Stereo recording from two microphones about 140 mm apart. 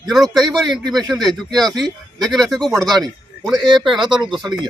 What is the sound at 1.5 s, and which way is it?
A man's voice, 5° left (ahead or behind).